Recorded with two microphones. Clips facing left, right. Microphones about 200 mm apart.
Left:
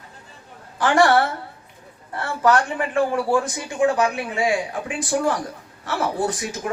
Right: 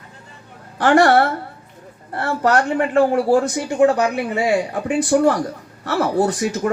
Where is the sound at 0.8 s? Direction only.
60° right (ahead or behind).